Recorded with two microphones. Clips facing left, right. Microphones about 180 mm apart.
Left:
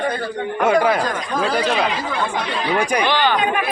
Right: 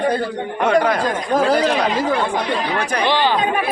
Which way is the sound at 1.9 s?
45° right (ahead or behind).